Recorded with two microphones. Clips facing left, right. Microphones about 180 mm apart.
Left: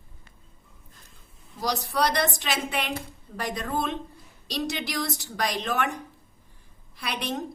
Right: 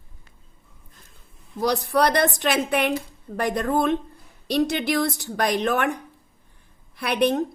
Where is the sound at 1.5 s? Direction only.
55° right (ahead or behind).